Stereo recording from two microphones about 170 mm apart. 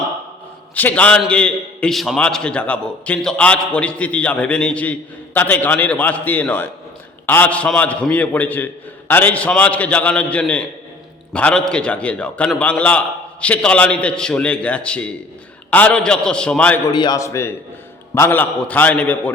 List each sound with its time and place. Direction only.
0.8 s a man's voice: 10° left (ahead or behind)
16.9 s a man's voice: 25° left (ahead or behind); by 19.3 s 10° left (ahead or behind)